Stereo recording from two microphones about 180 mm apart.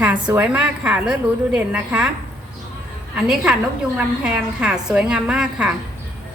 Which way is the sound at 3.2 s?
5° right (ahead or behind).